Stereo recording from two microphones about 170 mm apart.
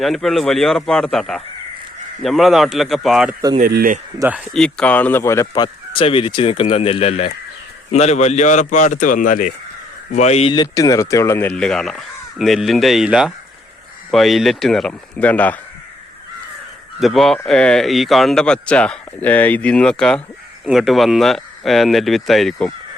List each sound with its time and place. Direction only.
0.0 s speech: centre (ahead or behind)
3.6 s speech: 60° right (ahead or behind)
4.2 s speech: 10° right (ahead or behind)
4.5 s a man's voice: 5° left (ahead or behind); by 10.5 s 40° left (ahead or behind)
10.5 s speech: 25° left (ahead or behind)
17.0 s speech: centre (ahead or behind)